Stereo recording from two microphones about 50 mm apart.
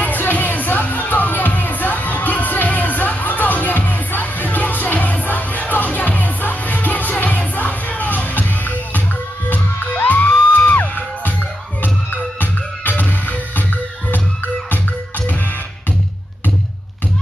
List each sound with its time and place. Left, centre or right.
0.0 s music: left
12.4 s music: left
14.7 s music: left